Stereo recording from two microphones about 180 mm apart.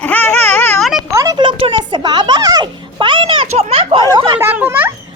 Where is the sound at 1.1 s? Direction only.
20° right (ahead or behind).